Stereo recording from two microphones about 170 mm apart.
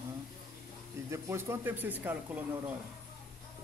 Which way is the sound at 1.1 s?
15° right (ahead or behind).